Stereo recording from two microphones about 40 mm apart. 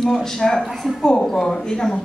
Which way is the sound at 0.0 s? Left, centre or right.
Centre.